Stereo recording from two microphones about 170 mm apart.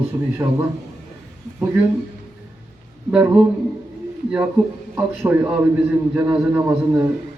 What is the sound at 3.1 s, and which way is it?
Speech, 5° right (ahead or behind).